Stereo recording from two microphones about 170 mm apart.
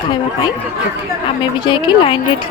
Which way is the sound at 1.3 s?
25° left (ahead or behind).